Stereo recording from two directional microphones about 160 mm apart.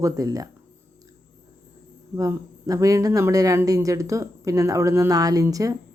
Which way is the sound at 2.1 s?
20° right (ahead or behind).